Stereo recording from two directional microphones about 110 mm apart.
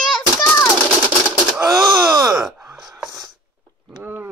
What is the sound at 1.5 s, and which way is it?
Wail, 30° right (ahead or behind).